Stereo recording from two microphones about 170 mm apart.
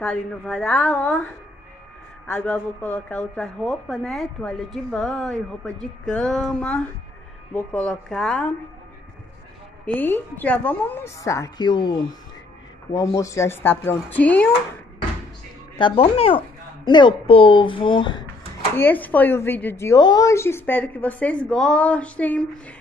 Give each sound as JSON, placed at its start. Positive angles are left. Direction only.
{"t": 0.0, "sound": "a woman's voice", "side_deg": 5}
{"t": 9.8, "sound": "a woman's voice", "side_deg": 10}
{"t": 15.7, "sound": "speech", "side_deg": 35}
{"t": 18.8, "sound": "a woman's voice", "side_deg": 10}